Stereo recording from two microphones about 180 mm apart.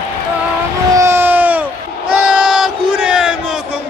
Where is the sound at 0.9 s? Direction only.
15° right (ahead or behind).